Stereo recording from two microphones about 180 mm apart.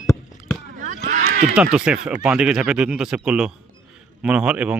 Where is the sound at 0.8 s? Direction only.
45° right (ahead or behind).